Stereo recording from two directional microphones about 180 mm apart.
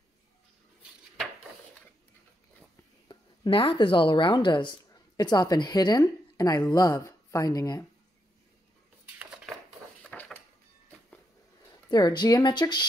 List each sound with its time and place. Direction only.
3.1 s speech: 30° left (ahead or behind)
10.0 s a sound: 5° left (ahead or behind)
11.9 s speech: 25° left (ahead or behind)